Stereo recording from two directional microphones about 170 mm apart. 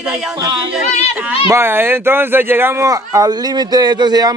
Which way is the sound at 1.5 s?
15° right (ahead or behind).